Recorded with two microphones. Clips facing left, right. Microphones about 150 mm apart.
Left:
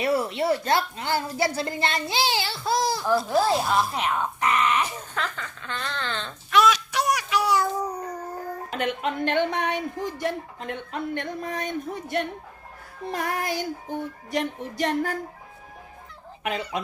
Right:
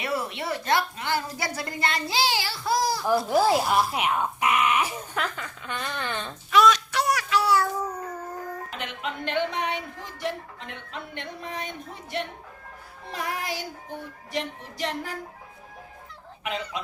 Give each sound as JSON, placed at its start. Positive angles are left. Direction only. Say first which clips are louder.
{"t": 0.0, "sound": "speech", "louder": "left 6 dB", "side_deg": 30}
{"t": 3.1, "sound": "speech", "louder": "right 1 dB", "side_deg": -15}
{"t": 6.5, "sound": "a sound", "louder": "right 1 dB", "side_deg": 5}
{"t": 8.7, "sound": "speech", "louder": "left 7 dB", "side_deg": 50}
{"t": 16.4, "sound": "speech", "louder": "left 3 dB", "side_deg": 55}